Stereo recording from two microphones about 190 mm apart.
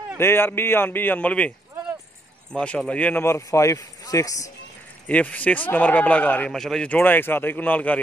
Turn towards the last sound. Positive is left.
turn(degrees=10)  # may be behind; listen again after turning